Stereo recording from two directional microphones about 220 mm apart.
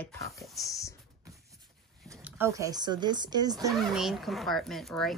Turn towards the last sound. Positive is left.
turn(degrees=0)  # may be behind; listen again after turning